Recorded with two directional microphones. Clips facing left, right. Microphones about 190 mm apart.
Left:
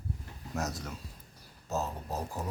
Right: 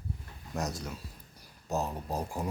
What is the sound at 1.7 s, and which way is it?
Speech, 15° right (ahead or behind).